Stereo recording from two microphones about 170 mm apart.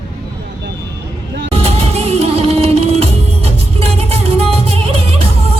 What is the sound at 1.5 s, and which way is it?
Music, 35° right (ahead or behind).